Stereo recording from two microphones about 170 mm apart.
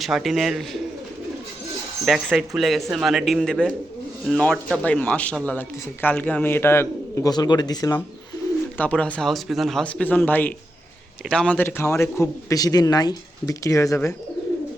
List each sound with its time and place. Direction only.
0.0 s speech: centre (ahead or behind)
2.0 s a man's voice: centre (ahead or behind); by 7.9 s 20° left (ahead or behind)
8.8 s a man's voice: 5° left (ahead or behind)